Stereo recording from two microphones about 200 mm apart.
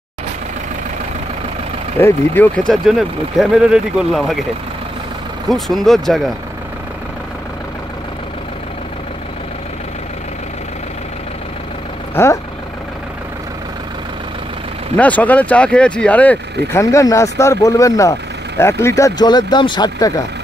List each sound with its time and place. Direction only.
2.0 s speech: 10° left (ahead or behind)
2.7 s speech: centre (ahead or behind)
5.5 s speech: centre (ahead or behind)
12.2 s speech: 10° left (ahead or behind)
15.0 s speech: 5° left (ahead or behind)